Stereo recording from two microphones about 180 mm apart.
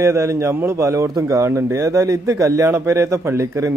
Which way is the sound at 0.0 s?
15° right (ahead or behind).